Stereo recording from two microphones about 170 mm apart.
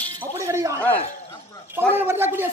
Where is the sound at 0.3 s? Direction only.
15° right (ahead or behind).